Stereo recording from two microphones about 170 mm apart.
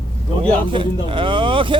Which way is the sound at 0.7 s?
30° right (ahead or behind).